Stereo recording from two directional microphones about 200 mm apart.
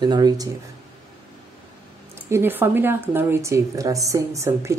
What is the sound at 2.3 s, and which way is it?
Speech, 10° right (ahead or behind).